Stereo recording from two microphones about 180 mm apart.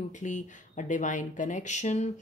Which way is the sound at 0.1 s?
45° left (ahead or behind).